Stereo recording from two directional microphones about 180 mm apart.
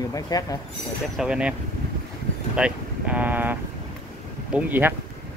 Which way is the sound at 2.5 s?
5° right (ahead or behind).